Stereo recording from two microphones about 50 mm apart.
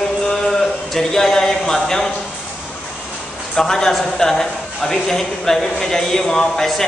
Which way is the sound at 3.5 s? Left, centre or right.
Centre.